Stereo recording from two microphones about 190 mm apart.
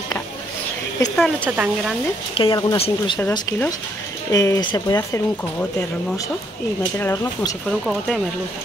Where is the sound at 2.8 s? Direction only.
30° left (ahead or behind).